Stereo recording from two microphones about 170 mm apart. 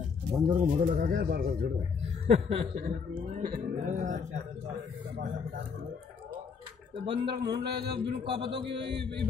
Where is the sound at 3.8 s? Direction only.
50° right (ahead or behind).